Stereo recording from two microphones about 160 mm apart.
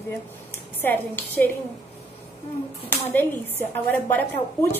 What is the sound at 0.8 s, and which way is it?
Speech, 10° left (ahead or behind).